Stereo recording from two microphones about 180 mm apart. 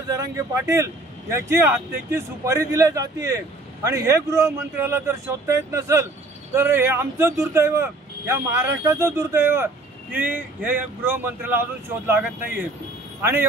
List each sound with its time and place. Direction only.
0.2 s speech: 20° right (ahead or behind)